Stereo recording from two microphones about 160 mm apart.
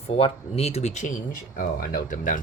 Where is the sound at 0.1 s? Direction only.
35° left (ahead or behind).